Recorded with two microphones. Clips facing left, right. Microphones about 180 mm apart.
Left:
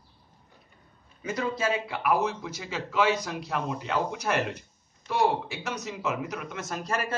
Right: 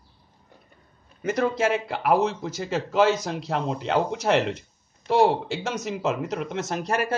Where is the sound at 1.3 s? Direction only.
75° right (ahead or behind).